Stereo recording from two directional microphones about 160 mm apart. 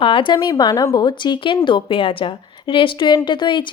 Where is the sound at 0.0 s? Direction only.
35° left (ahead or behind).